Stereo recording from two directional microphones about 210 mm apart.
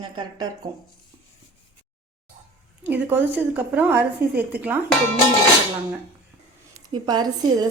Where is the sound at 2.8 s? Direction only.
10° right (ahead or behind).